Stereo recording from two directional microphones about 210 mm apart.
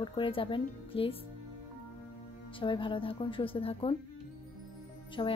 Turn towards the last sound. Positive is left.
turn(degrees=20)  # may be behind; listen again after turning